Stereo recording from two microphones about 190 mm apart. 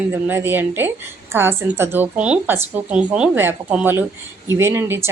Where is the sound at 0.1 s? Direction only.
10° right (ahead or behind).